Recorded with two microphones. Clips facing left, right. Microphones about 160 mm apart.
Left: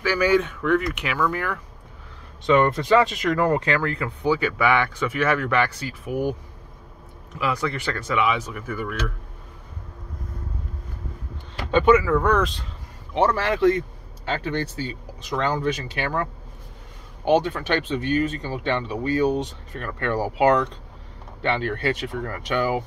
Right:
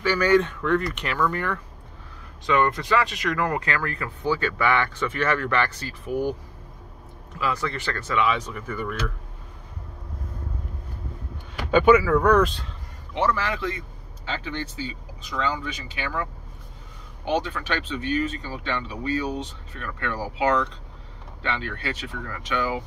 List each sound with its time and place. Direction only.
0.0 s speech: 5° left (ahead or behind)
2.4 s speech: 25° left (ahead or behind)
7.3 s speech: 15° left (ahead or behind)
11.7 s speech: 5° right (ahead or behind)
13.3 s speech: 55° left (ahead or behind)
17.5 s speech: 35° left (ahead or behind)
21.5 s speech: 45° left (ahead or behind)